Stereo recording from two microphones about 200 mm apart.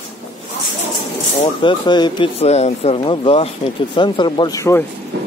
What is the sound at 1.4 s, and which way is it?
Speech, 25° left (ahead or behind).